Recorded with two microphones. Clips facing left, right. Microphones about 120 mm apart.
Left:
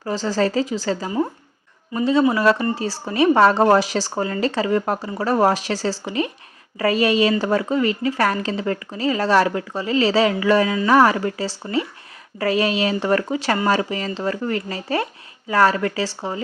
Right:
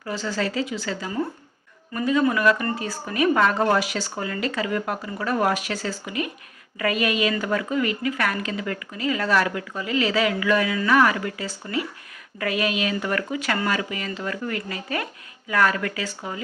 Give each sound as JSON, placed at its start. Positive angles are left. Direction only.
{"t": 0.0, "sound": "a woman's voice", "side_deg": 35}
{"t": 1.9, "sound": "a woman's voice", "side_deg": 25}